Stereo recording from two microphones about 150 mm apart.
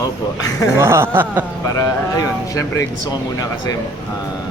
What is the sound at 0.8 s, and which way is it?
Music, 15° right (ahead or behind).